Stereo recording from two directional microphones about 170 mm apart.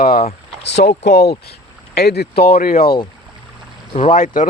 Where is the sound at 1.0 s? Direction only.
75° left (ahead or behind); by 3.0 s 60° left (ahead or behind).